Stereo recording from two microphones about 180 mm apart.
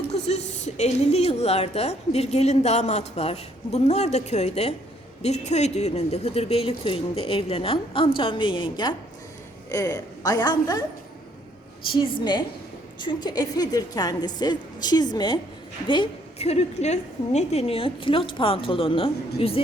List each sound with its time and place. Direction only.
0.1 s a woman's voice: 40° left (ahead or behind); by 10.8 s 20° left (ahead or behind)
11.9 s a woman's voice: 25° left (ahead or behind)